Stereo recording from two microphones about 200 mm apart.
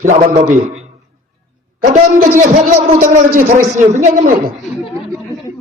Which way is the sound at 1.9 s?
40° right (ahead or behind).